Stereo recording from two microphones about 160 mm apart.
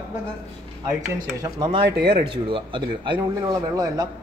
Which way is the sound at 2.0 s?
90° right.